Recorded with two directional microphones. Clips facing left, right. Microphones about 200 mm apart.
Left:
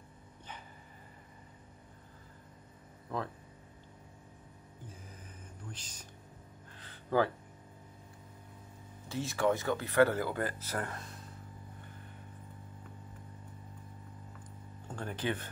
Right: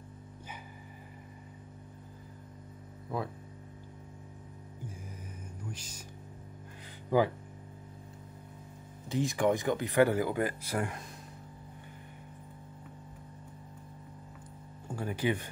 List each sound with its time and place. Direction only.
3.1 s speech: 10° right (ahead or behind)
5.7 s speech: 10° right (ahead or behind)
6.8 s a sound: 15° right (ahead or behind)
9.1 s speech: 15° right (ahead or behind)
14.9 s speech: 10° right (ahead or behind)